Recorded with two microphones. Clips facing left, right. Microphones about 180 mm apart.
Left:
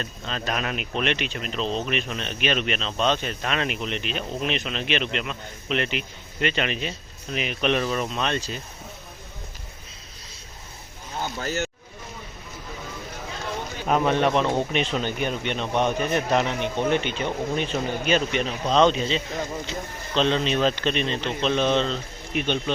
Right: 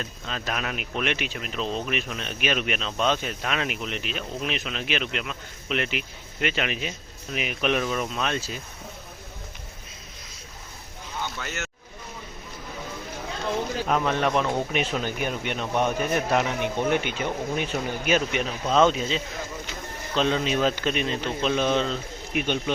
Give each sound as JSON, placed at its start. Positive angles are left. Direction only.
{"t": 0.0, "sound": "a man's voice", "side_deg": -5}
{"t": 11.2, "sound": "a sound", "side_deg": 35}
{"t": 13.8, "sound": "a man's voice", "side_deg": 5}